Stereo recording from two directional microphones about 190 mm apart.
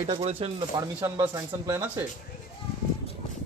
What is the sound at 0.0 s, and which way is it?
Speech, 30° right (ahead or behind).